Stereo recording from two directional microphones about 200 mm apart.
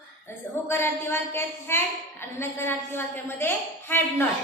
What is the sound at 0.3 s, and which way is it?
A woman's voice, 10° left (ahead or behind).